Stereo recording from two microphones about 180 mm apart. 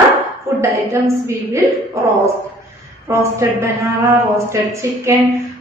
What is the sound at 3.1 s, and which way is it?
Speech, 15° right (ahead or behind).